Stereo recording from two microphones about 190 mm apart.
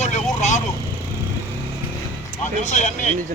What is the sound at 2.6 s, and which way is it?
Speech, 40° left (ahead or behind).